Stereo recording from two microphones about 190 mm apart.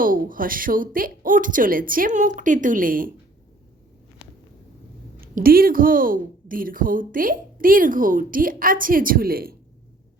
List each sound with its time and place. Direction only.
0.0 s a woman's voice: 45° right (ahead or behind)
5.2 s a woman's voice: 50° right (ahead or behind)